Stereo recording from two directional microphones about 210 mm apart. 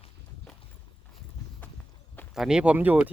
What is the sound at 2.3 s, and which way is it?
Speech, 5° right (ahead or behind).